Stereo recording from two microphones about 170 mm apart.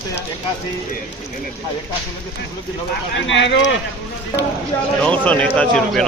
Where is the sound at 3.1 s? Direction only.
90° left.